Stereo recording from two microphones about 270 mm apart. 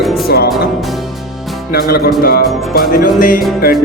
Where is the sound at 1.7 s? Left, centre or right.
Left.